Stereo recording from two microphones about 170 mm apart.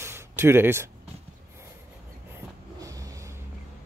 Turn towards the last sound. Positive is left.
turn(degrees=-20)  # may be behind; listen again after turning